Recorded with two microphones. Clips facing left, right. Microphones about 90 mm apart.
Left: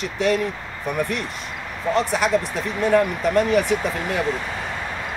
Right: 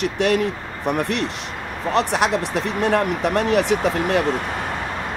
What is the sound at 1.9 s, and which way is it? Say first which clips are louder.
Speech: right 1 dB; 70° right (ahead or behind).